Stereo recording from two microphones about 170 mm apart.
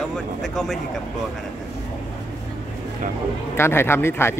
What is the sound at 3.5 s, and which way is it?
Speech, 15° left (ahead or behind).